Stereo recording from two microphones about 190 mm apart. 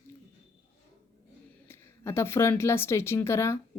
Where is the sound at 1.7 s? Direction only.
15° left (ahead or behind).